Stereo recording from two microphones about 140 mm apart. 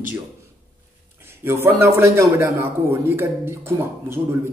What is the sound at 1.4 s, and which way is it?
A man's voice, 20° right (ahead or behind).